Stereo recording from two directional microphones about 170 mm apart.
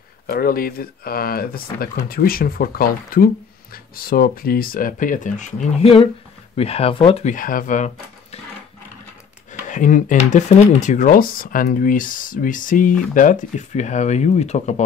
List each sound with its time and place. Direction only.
0.3 s speech: 60° left (ahead or behind); by 7.2 s 30° left (ahead or behind)
7.2 s speech: 55° left (ahead or behind)
9.5 s speech: 50° left (ahead or behind)
11.1 s speech: 55° left (ahead or behind)